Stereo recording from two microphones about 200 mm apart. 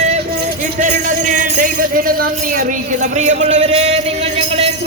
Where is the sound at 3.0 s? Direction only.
35° right (ahead or behind).